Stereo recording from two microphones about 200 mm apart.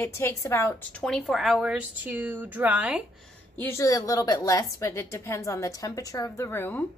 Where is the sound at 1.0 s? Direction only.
Centre (ahead or behind).